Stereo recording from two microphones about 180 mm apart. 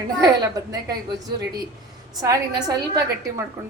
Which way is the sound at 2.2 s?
20° right (ahead or behind).